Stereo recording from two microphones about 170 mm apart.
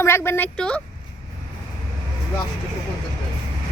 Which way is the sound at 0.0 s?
15° left (ahead or behind).